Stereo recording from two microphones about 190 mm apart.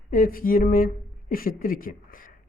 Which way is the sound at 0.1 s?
50° left (ahead or behind).